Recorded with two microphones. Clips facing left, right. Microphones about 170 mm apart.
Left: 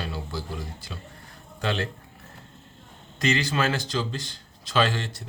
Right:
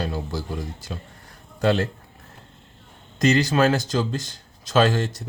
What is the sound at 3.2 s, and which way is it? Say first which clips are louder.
Speech: right 6 dB; 40° right (ahead or behind).